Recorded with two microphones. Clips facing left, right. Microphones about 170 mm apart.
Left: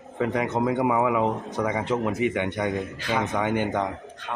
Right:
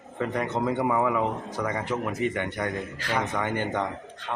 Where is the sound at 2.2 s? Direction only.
15° left (ahead or behind).